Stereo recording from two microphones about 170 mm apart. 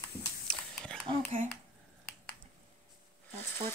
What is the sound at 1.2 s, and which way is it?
Speech, 45° right (ahead or behind).